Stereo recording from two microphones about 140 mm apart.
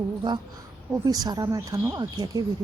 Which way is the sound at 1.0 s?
25° right (ahead or behind).